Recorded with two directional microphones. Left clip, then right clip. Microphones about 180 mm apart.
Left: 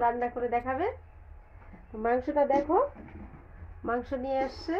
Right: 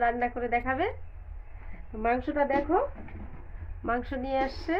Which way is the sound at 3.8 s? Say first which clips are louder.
Even; 20° left (ahead or behind).